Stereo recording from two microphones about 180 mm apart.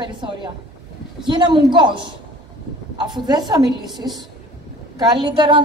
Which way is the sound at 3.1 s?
20° right (ahead or behind).